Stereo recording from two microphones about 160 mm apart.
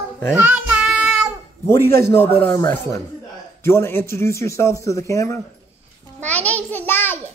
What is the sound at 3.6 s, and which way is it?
A man's voice, 15° left (ahead or behind).